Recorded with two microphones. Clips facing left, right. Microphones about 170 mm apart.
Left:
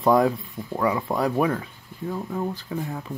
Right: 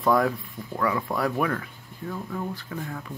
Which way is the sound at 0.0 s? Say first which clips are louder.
Left 3 dB; 20° left (ahead or behind).